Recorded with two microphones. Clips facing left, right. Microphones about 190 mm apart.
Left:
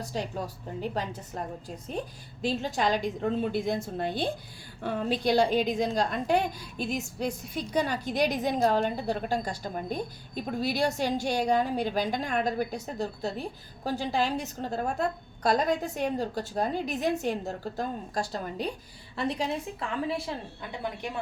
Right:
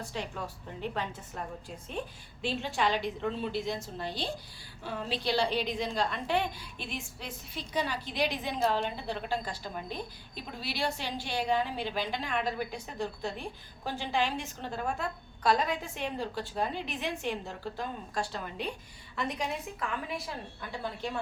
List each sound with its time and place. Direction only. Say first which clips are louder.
0.0 s a woman's voice: left 4 dB; 40° left (ahead or behind)